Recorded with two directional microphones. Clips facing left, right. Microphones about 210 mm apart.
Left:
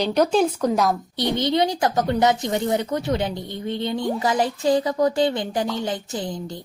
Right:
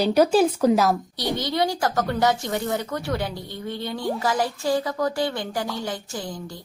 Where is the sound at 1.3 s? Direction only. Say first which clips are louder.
Left 3 dB; 20° left (ahead or behind).